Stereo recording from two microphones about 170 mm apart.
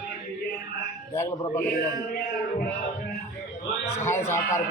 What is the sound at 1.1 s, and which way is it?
Speech, 15° left (ahead or behind).